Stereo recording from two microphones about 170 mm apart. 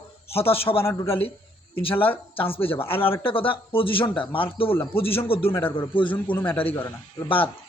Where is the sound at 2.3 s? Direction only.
35° left (ahead or behind).